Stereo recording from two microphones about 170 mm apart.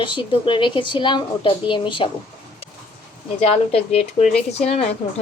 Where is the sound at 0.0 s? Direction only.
30° left (ahead or behind).